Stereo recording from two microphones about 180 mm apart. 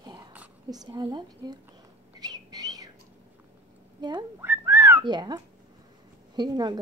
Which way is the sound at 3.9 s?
25° right (ahead or behind).